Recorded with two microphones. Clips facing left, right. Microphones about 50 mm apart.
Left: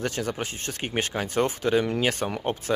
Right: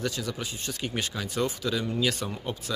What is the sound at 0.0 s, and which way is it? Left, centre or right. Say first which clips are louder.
Speech: left 3 dB; left.